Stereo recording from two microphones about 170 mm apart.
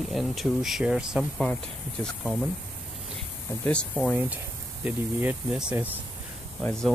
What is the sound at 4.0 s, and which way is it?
Speech, 5° right (ahead or behind).